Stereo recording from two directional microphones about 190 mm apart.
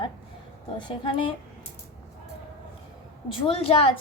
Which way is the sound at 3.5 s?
30° left (ahead or behind).